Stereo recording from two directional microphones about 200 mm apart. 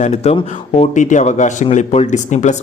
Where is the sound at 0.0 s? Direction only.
35° left (ahead or behind).